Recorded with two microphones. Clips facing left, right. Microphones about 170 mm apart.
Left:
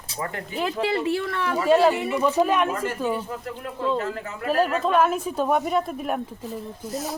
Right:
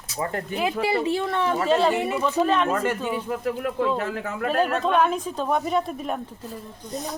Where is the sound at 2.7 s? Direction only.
70° right (ahead or behind).